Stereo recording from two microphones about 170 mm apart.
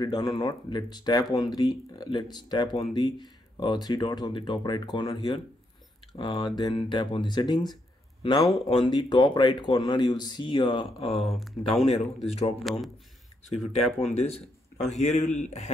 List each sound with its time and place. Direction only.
0.0 s speech: 25° left (ahead or behind)
11.1 s speech: centre (ahead or behind)
11.9 s speech: 40° left (ahead or behind)
14.1 s a man's voice: 40° left (ahead or behind)